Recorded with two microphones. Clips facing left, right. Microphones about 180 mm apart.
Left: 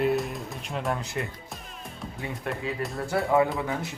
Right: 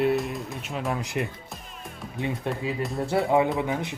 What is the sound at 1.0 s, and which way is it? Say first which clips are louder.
Speech: right 3 dB; 20° right (ahead or behind).